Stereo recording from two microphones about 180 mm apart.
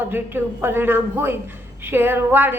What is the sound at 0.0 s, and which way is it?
A man's voice, 10° right (ahead or behind).